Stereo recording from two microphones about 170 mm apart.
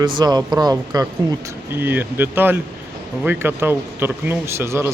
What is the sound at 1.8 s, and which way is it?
Speech, 10° right (ahead or behind).